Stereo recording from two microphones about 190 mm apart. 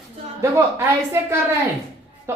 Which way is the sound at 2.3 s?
15° right (ahead or behind).